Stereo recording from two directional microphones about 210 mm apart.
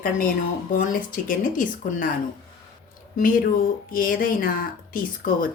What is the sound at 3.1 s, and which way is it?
Speech, 40° left (ahead or behind).